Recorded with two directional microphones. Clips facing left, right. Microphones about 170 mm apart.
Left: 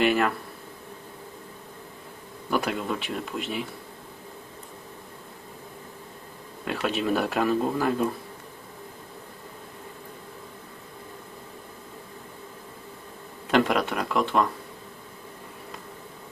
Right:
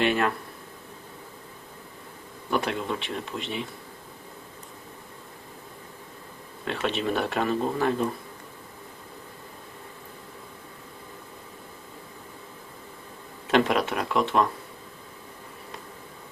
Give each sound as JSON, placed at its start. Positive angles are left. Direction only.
{"t": 0.0, "sound": "speech", "side_deg": 5}
{"t": 2.5, "sound": "speech", "side_deg": 0}
{"t": 6.7, "sound": "speech", "side_deg": 5}
{"t": 13.5, "sound": "speech", "side_deg": 0}